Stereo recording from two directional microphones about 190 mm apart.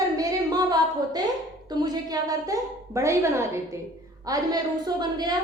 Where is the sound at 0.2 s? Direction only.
20° right (ahead or behind).